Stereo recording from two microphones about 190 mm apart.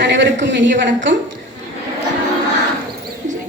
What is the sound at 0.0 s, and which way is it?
Speech, 70° right (ahead or behind).